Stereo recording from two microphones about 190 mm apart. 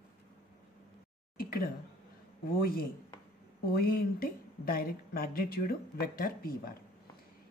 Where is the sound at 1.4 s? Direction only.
50° left (ahead or behind).